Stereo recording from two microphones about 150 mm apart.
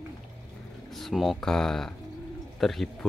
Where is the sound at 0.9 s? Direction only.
Centre (ahead or behind).